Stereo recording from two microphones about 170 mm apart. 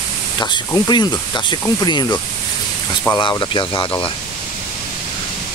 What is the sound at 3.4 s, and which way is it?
Speech, 25° left (ahead or behind).